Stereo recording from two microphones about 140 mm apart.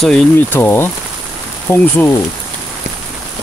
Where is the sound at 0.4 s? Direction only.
15° left (ahead or behind).